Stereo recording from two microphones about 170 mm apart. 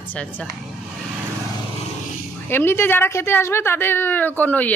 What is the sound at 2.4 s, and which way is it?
A woman's voice, 15° left (ahead or behind).